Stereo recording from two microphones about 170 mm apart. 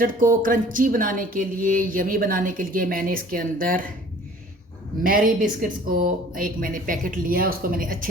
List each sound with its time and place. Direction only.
0.0 s speech: 55° right (ahead or behind)
5.0 s speech: 55° right (ahead or behind)